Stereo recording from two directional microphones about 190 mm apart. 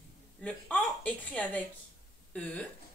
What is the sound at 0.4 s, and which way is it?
A woman's voice, 5° left (ahead or behind).